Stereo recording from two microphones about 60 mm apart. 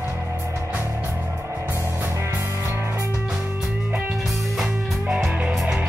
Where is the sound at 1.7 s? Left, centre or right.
Right.